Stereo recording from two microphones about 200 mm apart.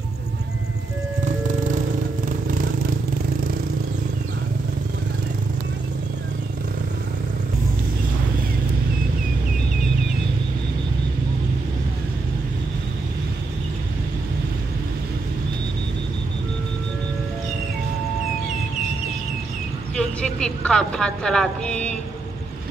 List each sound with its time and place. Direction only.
1.2 s music: 40° right (ahead or behind)
2.2 s vehicle: 45° right (ahead or behind)
20.0 s a woman's voice: 5° left (ahead or behind)